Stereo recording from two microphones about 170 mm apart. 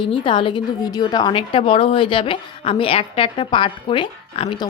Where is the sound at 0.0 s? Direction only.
30° left (ahead or behind).